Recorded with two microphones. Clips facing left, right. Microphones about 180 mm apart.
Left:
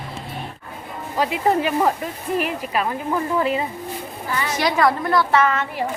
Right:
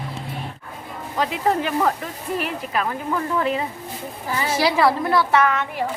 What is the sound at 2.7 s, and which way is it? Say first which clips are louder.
Speech: left 1 dB; 10° left (ahead or behind).